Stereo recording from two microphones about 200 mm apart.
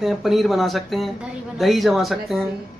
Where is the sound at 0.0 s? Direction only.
Centre (ahead or behind).